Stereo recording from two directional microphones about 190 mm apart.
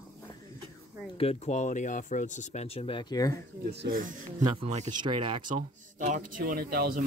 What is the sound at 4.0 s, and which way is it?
Speech, 45° right (ahead or behind).